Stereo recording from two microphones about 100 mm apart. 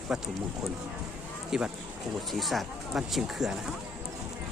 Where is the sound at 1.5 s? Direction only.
5° right (ahead or behind).